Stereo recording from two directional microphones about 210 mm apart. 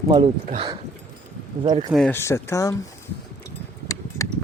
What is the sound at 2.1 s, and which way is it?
Speech, 10° left (ahead or behind).